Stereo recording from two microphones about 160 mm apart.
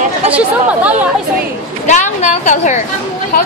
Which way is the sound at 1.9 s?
50° left (ahead or behind).